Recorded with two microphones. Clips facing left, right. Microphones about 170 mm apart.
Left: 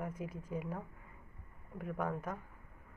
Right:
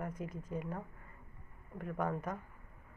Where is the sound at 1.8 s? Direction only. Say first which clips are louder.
Right 1 dB; 5° left (ahead or behind).